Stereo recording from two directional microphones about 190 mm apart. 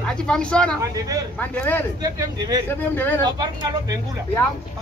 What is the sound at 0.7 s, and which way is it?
Speech, 20° right (ahead or behind).